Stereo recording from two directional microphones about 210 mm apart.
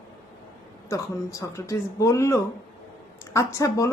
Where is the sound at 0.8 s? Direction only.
15° left (ahead or behind).